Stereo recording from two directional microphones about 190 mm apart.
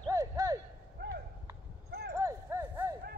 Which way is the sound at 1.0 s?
55° right (ahead or behind).